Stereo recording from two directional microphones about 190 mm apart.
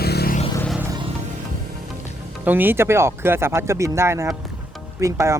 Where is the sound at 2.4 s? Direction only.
10° right (ahead or behind).